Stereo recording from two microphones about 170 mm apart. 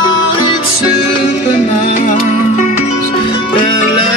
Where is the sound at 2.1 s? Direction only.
45° left (ahead or behind).